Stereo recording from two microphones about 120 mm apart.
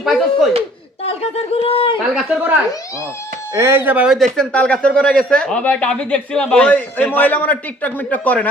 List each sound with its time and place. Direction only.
0.0 s speech: centre (ahead or behind)
1.0 s speech: 55° left (ahead or behind)
2.1 s speech: 15° right (ahead or behind); by 8.4 s 10° left (ahead or behind)